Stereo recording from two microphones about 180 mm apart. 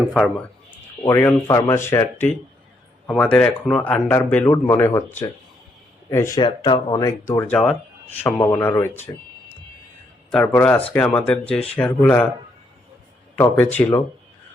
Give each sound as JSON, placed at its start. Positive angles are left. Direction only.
{"t": 1.0, "sound": "speech", "side_deg": 15}
{"t": 6.1, "sound": "speech", "side_deg": 15}
{"t": 8.3, "sound": "speech", "side_deg": 20}
{"t": 10.3, "sound": "speech", "side_deg": 10}
{"t": 13.3, "sound": "speech", "side_deg": 10}